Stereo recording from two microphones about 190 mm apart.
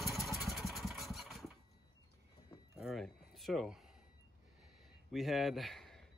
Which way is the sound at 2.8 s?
Centre (ahead or behind).